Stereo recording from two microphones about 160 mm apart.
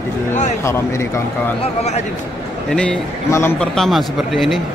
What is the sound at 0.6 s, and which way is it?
Speech, 15° left (ahead or behind).